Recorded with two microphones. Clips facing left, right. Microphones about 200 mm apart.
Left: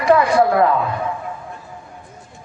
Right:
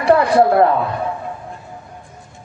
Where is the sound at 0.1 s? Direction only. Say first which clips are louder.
Right 2 dB; 45° right (ahead or behind).